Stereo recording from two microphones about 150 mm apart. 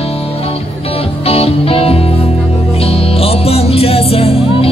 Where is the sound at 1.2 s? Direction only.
40° left (ahead or behind).